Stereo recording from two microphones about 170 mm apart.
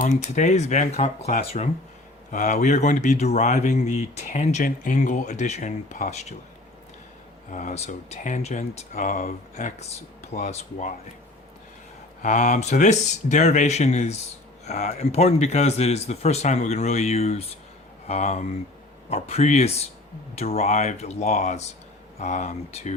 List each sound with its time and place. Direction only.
0.0 s speech: 45° left (ahead or behind)
7.5 s speech: 45° left (ahead or behind)
12.2 s speech: 45° left (ahead or behind)